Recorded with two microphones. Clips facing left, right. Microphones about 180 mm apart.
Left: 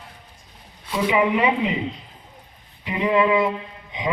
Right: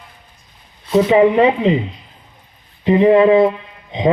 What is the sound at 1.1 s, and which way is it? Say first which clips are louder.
Speech: right 7 dB; 40° right (ahead or behind).